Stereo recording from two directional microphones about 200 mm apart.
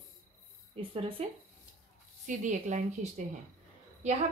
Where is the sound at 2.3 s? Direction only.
40° right (ahead or behind).